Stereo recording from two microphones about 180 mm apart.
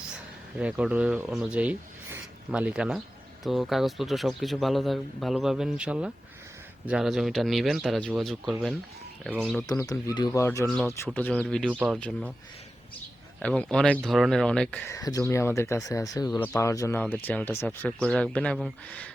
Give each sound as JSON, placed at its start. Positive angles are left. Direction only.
{"t": 0.6, "sound": "speech", "side_deg": -5}
{"t": 9.6, "sound": "speech", "side_deg": 20}
{"t": 11.7, "sound": "speech", "side_deg": -5}
{"t": 11.9, "sound": "speech", "side_deg": 5}
{"t": 13.4, "sound": "speech", "side_deg": 5}
{"t": 14.8, "sound": "speech", "side_deg": 20}